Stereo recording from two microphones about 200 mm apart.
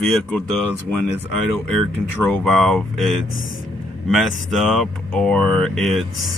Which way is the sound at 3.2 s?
75° left (ahead or behind).